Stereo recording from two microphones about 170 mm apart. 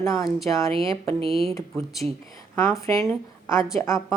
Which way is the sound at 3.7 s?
15° left (ahead or behind).